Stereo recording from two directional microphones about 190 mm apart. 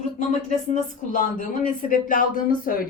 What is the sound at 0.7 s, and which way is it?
Speech, 45° left (ahead or behind).